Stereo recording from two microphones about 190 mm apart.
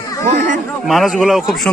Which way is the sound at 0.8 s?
Centre (ahead or behind).